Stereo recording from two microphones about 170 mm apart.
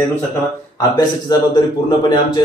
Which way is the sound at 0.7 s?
25° left (ahead or behind).